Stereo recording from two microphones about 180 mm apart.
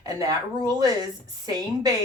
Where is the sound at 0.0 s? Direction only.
20° right (ahead or behind).